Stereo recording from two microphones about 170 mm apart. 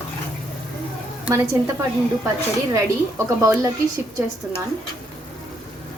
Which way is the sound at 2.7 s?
15° right (ahead or behind).